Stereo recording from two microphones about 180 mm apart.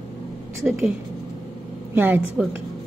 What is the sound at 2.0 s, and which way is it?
Speech, 10° right (ahead or behind).